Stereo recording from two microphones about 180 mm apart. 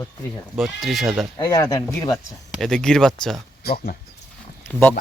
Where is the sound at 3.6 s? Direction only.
60° left (ahead or behind).